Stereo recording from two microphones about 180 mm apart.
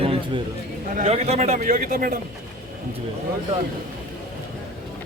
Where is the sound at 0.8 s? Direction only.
45° right (ahead or behind).